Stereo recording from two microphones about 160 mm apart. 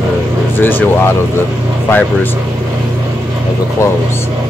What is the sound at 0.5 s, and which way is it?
Speech, 15° left (ahead or behind).